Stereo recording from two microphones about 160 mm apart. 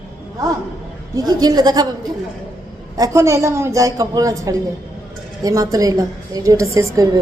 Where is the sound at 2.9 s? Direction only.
20° right (ahead or behind).